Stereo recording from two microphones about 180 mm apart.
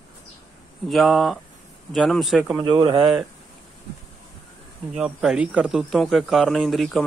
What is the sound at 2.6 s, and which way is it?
Speech, 25° right (ahead or behind).